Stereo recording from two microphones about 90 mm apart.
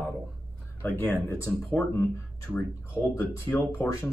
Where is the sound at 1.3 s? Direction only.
35° left (ahead or behind).